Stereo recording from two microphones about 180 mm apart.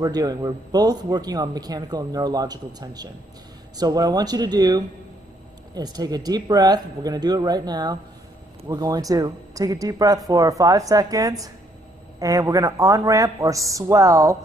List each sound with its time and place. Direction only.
0.0 s a man's voice: 20° right (ahead or behind)